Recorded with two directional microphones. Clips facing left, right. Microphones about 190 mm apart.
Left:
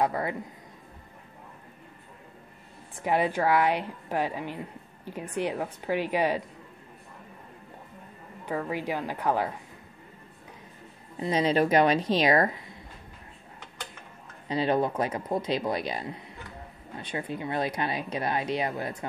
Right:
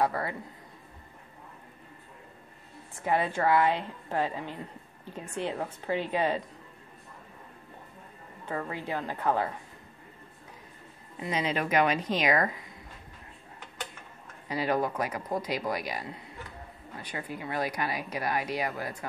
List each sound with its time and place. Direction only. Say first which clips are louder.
0.0 s speech: left 2 dB; 20° left (ahead or behind)
3.0 s a woman's voice: left 2 dB; 15° left (ahead or behind)
8.6 s a woman's voice: left 3 dB; 15° left (ahead or behind)
11.1 s speech: left 6 dB; 35° left (ahead or behind)
14.5 s speech: left 3 dB; 25° left (ahead or behind)